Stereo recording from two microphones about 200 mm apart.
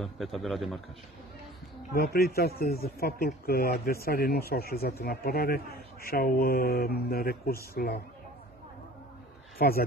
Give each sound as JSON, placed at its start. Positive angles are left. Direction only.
{"t": 0.0, "sound": "a man's voice", "side_deg": 0}
{"t": 2.0, "sound": "speech", "side_deg": 50}
{"t": 9.6, "sound": "speech", "side_deg": 50}